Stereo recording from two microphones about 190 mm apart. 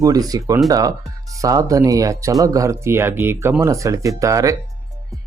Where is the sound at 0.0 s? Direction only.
20° right (ahead or behind).